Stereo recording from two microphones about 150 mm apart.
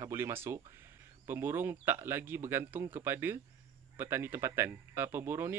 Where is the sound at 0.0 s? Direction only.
15° right (ahead or behind).